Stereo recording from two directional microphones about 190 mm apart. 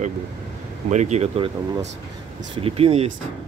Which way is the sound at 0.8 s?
35° right (ahead or behind).